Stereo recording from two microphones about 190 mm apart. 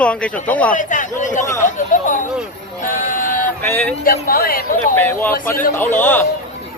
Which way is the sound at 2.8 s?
45° left (ahead or behind).